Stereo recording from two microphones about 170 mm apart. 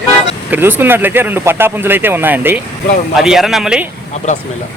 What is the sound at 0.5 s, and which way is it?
Speech, 10° right (ahead or behind).